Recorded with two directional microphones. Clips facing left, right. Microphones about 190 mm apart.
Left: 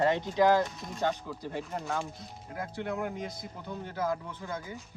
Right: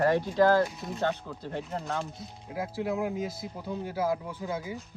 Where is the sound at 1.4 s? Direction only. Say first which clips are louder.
Right 1 dB; 10° left (ahead or behind).